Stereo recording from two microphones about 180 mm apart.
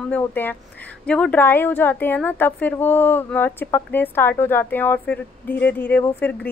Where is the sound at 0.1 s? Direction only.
10° left (ahead or behind).